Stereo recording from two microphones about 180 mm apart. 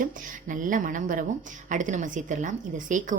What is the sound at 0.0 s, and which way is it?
A woman's voice, 50° right (ahead or behind).